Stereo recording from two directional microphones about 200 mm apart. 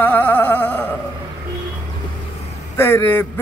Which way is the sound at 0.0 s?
10° left (ahead or behind).